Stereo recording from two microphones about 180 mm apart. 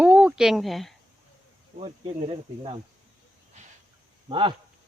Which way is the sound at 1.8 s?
30° right (ahead or behind).